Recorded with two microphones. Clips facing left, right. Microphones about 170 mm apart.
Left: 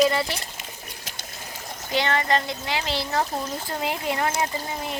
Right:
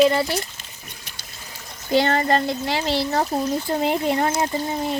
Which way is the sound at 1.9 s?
35° right (ahead or behind).